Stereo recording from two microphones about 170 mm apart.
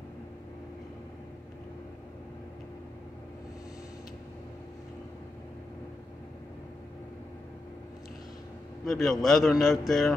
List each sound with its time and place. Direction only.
8.8 s a man's voice: centre (ahead or behind)